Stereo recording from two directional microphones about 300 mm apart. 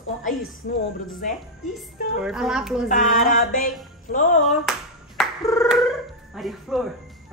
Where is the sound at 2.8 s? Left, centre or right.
Left.